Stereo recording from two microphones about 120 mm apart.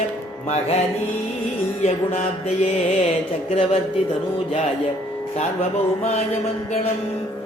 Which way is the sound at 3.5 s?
60° left (ahead or behind).